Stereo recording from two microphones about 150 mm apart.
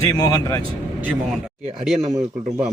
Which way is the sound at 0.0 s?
25° left (ahead or behind).